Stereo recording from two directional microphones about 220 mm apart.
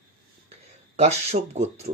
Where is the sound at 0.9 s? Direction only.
30° right (ahead or behind).